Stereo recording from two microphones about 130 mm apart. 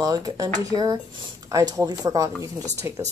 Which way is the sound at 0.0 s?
30° right (ahead or behind).